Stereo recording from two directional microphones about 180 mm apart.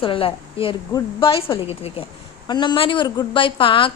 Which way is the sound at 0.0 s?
30° left (ahead or behind).